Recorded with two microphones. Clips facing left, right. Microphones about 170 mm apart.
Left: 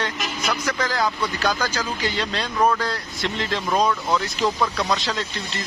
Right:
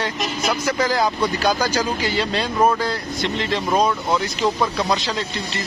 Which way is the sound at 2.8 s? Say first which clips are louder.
Right 3 dB; centre (ahead or behind).